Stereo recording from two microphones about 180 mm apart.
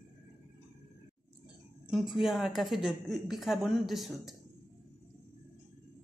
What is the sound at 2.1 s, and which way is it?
A woman's voice, centre (ahead or behind).